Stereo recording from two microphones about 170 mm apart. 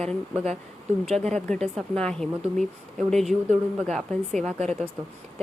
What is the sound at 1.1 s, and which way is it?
Speech, 5° left (ahead or behind).